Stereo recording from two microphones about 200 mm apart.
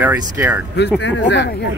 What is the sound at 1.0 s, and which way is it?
Speech, 65° left (ahead or behind).